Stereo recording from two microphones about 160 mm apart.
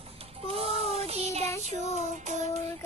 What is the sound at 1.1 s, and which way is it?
Child singing, 40° right (ahead or behind).